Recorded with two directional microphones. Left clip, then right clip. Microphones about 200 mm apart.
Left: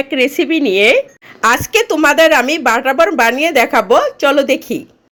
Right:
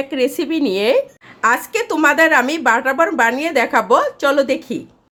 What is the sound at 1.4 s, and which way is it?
Speech, 10° left (ahead or behind).